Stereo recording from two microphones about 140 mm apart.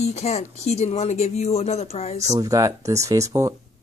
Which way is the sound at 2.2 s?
25° right (ahead or behind).